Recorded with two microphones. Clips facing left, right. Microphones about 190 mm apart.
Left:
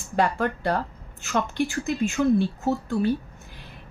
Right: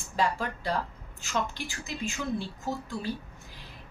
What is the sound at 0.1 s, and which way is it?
Speech, 60° left (ahead or behind).